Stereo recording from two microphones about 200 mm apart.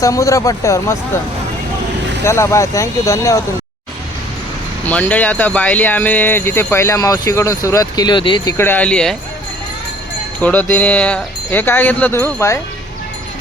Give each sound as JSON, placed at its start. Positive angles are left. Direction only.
{"t": 0.0, "sound": "speech", "side_deg": 15}
{"t": 2.2, "sound": "speech", "side_deg": 15}
{"t": 4.9, "sound": "speech", "side_deg": 5}
{"t": 8.5, "sound": "speech", "side_deg": 10}
{"t": 10.4, "sound": "speech", "side_deg": 10}